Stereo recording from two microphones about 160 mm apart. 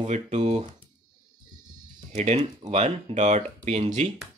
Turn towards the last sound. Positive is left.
turn(degrees=-45)  # may be behind; listen again after turning